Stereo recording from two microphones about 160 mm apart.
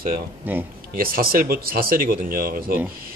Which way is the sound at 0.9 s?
65° right (ahead or behind).